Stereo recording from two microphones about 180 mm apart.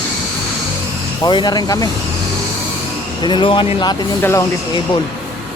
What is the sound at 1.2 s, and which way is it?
Speech, 25° left (ahead or behind).